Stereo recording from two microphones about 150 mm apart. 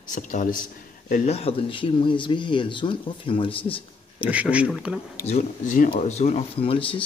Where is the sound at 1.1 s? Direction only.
45° left (ahead or behind).